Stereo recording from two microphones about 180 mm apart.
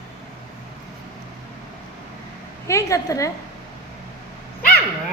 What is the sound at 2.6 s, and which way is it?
Speech, 15° left (ahead or behind).